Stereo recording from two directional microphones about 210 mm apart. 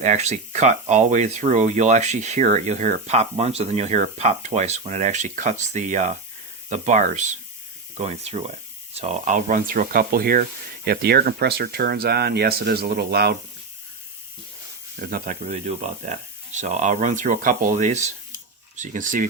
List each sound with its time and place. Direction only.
0.0 s speech: 35° right (ahead or behind); by 13.3 s 50° right (ahead or behind)
15.0 s speech: 40° right (ahead or behind)